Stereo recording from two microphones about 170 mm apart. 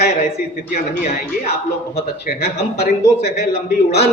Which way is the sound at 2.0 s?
65° left (ahead or behind).